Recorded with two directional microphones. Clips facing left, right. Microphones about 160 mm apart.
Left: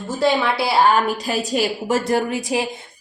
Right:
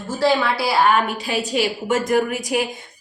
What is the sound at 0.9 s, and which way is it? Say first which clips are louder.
A woman's voice: left 1 dB; 40° left (ahead or behind).